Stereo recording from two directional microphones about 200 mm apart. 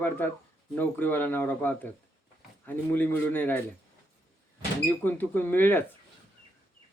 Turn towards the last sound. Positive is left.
turn(degrees=10)  # may be behind; listen again after turning